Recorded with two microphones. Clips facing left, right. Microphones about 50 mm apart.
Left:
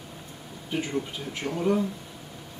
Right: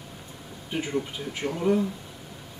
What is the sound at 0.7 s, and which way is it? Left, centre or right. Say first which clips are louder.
Speech: even; centre.